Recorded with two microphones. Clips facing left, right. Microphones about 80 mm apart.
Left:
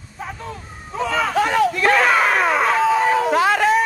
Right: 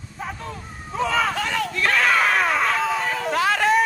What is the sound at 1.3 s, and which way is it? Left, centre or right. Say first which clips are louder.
Speech: left 7 dB; left.